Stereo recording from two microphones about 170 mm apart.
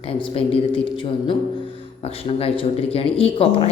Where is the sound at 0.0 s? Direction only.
35° left (ahead or behind).